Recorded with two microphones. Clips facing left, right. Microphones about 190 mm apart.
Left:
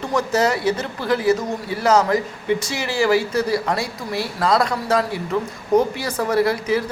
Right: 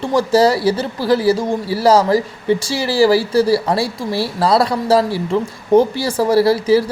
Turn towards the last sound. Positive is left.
turn(degrees=-30)  # may be behind; listen again after turning